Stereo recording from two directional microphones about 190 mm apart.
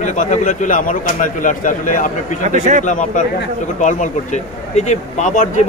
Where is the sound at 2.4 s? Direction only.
40° right (ahead or behind).